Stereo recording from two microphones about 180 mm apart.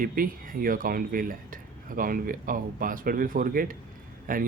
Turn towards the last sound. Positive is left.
turn(degrees=-50)  # may be behind; listen again after turning